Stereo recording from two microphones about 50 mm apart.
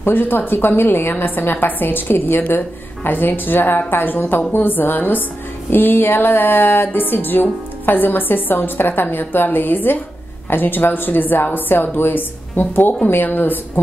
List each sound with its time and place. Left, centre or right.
0.0 s a woman's voice: left